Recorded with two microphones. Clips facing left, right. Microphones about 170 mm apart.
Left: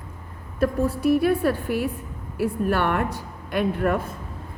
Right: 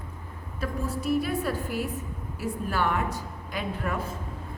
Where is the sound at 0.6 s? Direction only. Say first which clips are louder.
Left 9 dB; 60° left (ahead or behind).